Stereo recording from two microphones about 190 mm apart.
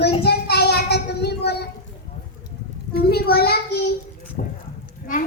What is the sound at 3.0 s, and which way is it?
Speech, 55° left (ahead or behind).